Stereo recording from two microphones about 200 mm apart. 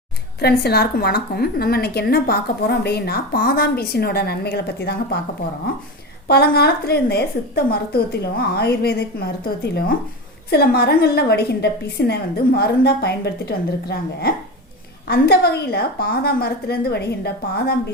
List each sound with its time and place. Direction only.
0.3 s a woman's voice: 55° left (ahead or behind)
6.2 s a woman's voice: 50° left (ahead or behind)